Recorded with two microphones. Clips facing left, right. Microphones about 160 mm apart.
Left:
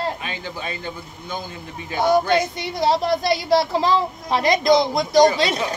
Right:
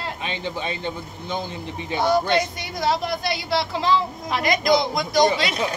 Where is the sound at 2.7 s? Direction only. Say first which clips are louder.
Left 4 dB; 35° left (ahead or behind).